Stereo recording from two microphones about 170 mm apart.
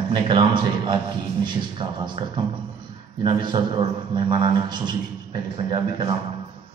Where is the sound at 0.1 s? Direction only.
25° right (ahead or behind).